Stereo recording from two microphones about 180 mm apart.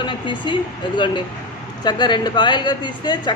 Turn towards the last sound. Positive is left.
turn(degrees=25)  # may be behind; listen again after turning